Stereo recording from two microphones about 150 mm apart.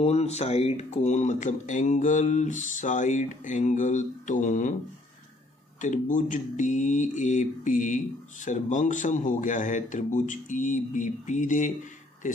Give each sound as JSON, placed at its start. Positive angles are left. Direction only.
{"t": 0.0, "sound": "speech", "side_deg": 45}
{"t": 5.8, "sound": "speech", "side_deg": 55}